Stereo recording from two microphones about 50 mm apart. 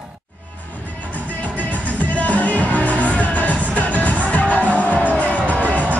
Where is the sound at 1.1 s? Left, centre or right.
Left.